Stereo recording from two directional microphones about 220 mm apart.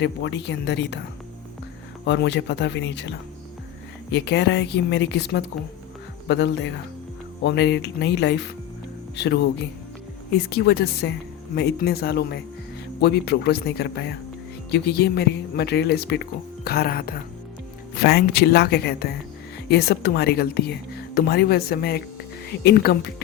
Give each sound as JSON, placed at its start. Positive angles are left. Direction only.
{"t": 0.0, "sound": "speech", "side_deg": 55}
{"t": 2.0, "sound": "speech", "side_deg": 50}